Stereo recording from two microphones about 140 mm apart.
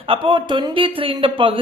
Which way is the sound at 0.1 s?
35° right (ahead or behind).